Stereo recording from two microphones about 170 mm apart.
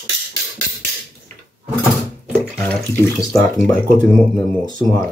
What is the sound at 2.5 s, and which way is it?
Speech, 5° left (ahead or behind).